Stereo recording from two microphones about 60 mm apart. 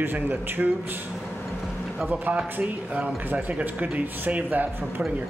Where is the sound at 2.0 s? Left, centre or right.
Right.